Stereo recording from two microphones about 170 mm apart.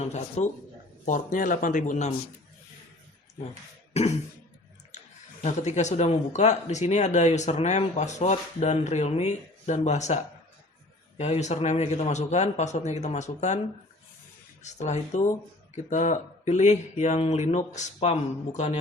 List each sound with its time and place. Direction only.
0.0 s speech: 40° left (ahead or behind)
5.4 s speech: 40° left (ahead or behind)
11.2 s speech: 40° left (ahead or behind)
14.6 s speech: 45° left (ahead or behind)